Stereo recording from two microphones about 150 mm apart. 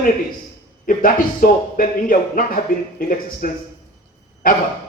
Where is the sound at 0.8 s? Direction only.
65° left (ahead or behind).